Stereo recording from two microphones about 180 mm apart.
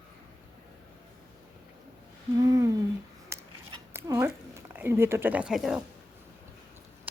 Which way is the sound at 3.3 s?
15° right (ahead or behind).